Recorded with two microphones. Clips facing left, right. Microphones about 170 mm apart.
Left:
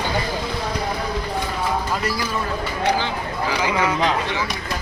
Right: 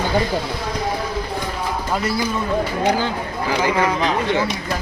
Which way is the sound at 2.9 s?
45° right (ahead or behind).